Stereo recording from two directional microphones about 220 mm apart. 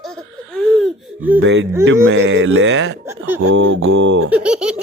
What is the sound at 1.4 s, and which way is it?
Speech, 55° right (ahead or behind).